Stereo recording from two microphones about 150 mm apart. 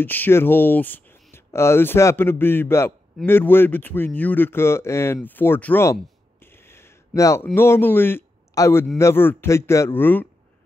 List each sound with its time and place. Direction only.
0.0 s speech: 15° left (ahead or behind)
6.4 s a sound: 15° left (ahead or behind)
7.5 s a man's voice: 15° left (ahead or behind)